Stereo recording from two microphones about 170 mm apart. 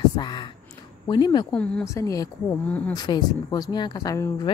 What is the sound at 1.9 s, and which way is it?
A woman's voice, 20° left (ahead or behind).